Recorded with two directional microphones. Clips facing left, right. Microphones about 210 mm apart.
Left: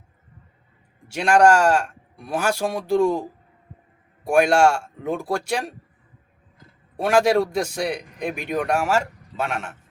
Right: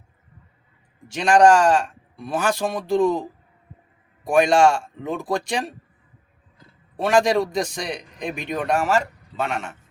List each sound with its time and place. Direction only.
1.0 s a man's voice: 10° left (ahead or behind)
6.9 s a man's voice: 10° left (ahead or behind)